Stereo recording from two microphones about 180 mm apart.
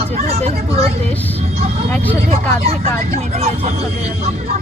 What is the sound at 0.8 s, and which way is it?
A child's voice, 10° left (ahead or behind).